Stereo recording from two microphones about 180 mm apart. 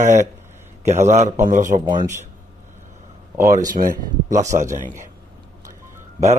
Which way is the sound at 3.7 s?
50° right (ahead or behind).